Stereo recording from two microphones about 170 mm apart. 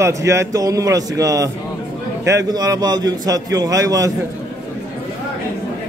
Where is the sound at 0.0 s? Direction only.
20° right (ahead or behind).